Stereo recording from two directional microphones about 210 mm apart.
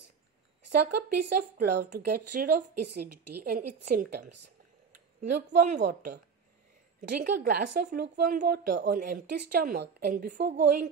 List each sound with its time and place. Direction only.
1.6 s a woman's voice: 45° right (ahead or behind)
5.8 s a woman's voice: 55° right (ahead or behind)
8.6 s speech: 55° right (ahead or behind)
8.9 s a woman's voice: 45° right (ahead or behind)